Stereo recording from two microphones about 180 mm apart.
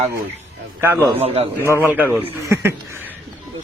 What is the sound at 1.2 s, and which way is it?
Speech, 35° right (ahead or behind).